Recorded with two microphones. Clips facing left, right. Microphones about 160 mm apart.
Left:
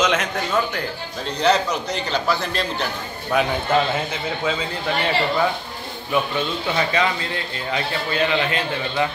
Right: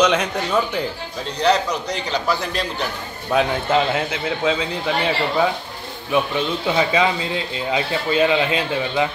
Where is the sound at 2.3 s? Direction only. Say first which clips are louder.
Even; 10° right (ahead or behind).